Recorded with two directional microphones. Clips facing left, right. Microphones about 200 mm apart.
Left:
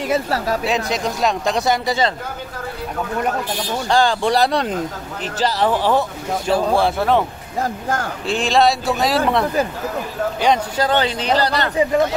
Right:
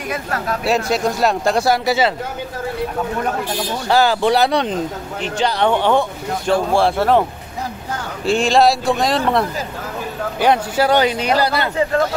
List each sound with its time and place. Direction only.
0.1 s speech: 30° left (ahead or behind)
0.7 s speech: centre (ahead or behind)
3.9 s speech: 5° right (ahead or behind)
7.6 s speech: 50° left (ahead or behind)
8.3 s speech: centre (ahead or behind)